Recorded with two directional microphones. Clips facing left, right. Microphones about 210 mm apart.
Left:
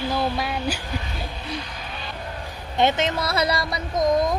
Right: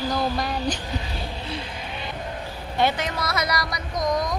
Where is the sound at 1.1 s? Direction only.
30° right (ahead or behind).